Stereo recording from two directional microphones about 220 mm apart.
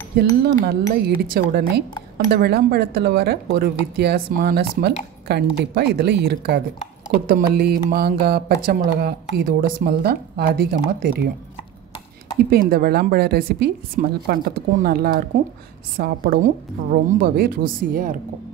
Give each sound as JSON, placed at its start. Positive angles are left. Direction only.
{"t": 0.4, "sound": "speech", "side_deg": -40}
{"t": 12.4, "sound": "speech", "side_deg": -40}